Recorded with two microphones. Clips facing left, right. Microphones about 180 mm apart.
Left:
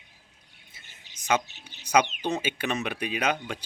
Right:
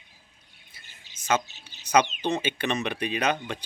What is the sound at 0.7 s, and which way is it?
Bird, 20° left (ahead or behind).